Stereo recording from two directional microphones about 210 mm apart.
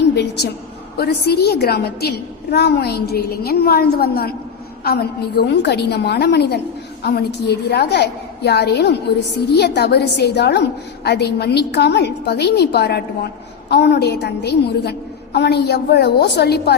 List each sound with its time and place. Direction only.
0.9 s a woman's voice: 50° left (ahead or behind)